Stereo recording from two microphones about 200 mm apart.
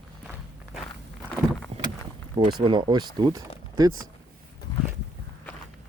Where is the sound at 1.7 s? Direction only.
30° right (ahead or behind).